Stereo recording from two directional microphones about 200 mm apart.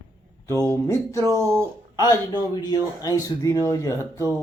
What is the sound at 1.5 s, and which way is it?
Speech, 20° left (ahead or behind).